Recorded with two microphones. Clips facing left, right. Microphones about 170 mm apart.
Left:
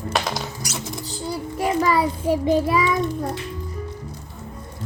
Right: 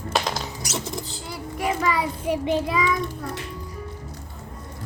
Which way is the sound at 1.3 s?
35° left (ahead or behind).